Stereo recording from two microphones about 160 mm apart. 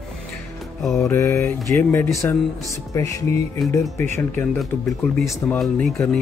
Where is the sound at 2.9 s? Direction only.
20° left (ahead or behind).